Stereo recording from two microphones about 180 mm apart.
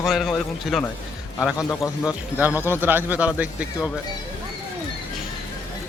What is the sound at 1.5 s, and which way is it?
Speech, 20° left (ahead or behind).